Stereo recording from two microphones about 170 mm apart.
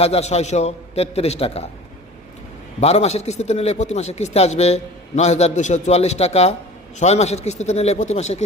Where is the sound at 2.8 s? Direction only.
40° left (ahead or behind).